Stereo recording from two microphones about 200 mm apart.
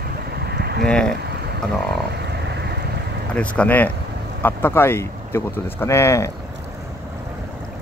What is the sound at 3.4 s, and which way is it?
Speech, 5° left (ahead or behind).